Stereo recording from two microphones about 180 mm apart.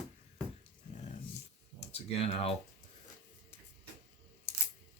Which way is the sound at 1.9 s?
35° left (ahead or behind).